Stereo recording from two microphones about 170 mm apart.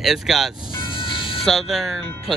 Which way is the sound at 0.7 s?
30° left (ahead or behind).